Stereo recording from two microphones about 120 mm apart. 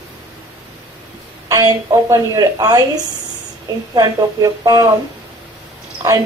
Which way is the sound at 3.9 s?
30° right (ahead or behind).